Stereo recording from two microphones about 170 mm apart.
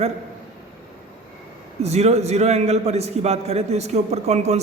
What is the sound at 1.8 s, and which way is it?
A man's voice, 40° right (ahead or behind).